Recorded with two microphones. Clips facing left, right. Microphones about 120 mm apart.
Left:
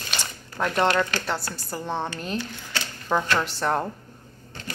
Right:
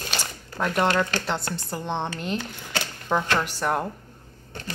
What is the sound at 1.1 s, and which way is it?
Speech, 20° right (ahead or behind).